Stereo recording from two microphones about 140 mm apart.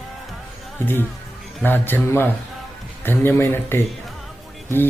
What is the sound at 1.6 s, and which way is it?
Speech, 15° left (ahead or behind).